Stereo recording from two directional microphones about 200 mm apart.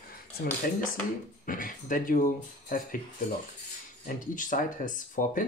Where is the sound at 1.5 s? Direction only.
40° left (ahead or behind).